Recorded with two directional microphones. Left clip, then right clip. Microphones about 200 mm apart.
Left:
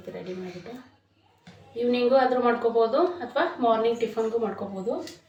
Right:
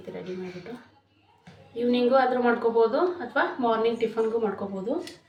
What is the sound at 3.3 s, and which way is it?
A woman's voice, centre (ahead or behind).